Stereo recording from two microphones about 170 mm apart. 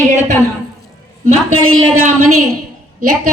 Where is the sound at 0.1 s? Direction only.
45° right (ahead or behind).